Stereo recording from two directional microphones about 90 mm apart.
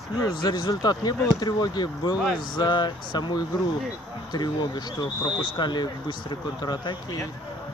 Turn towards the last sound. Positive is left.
turn(degrees=50)  # may be behind; listen again after turning